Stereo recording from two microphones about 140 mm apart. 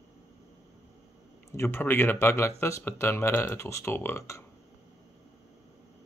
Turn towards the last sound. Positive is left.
turn(degrees=20)  # may be behind; listen again after turning